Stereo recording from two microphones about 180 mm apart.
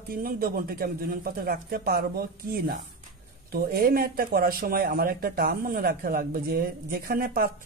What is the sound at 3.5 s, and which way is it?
A man's voice, 55° right (ahead or behind).